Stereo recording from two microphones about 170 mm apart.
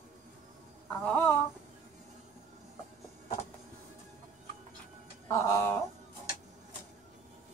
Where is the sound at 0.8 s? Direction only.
10° left (ahead or behind).